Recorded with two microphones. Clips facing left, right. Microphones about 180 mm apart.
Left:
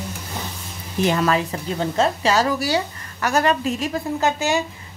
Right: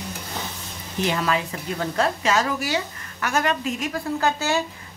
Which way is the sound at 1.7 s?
25° left (ahead or behind).